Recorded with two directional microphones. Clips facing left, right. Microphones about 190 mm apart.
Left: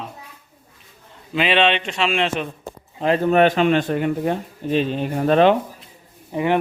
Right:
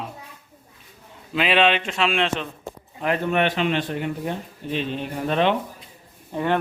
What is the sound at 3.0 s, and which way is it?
Speech, 30° left (ahead or behind).